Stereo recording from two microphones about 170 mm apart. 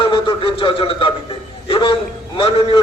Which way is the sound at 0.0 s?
30° left (ahead or behind).